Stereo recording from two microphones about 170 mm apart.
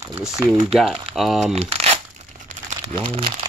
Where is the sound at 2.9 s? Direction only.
35° right (ahead or behind).